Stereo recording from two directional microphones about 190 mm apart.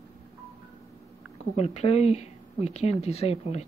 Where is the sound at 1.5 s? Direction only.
35° left (ahead or behind).